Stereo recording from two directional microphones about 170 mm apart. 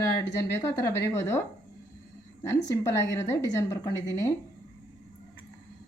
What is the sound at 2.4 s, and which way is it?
A woman's voice, 20° left (ahead or behind).